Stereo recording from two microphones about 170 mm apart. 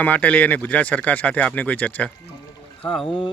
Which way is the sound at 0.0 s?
10° left (ahead or behind).